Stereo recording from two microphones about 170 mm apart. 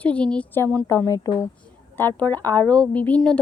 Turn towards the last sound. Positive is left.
turn(degrees=5)  # may be behind; listen again after turning